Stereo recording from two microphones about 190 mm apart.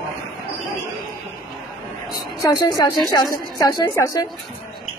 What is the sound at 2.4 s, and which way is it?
A woman's voice, 20° left (ahead or behind).